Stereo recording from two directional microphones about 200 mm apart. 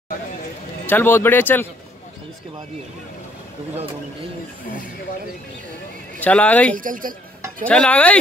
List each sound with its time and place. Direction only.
0.8 s speech: 10° left (ahead or behind)
3.7 s speech: 30° right (ahead or behind)
6.1 s speech: 5° left (ahead or behind)
6.8 s speech: 45° right (ahead or behind)
7.6 s speech: 5° left (ahead or behind)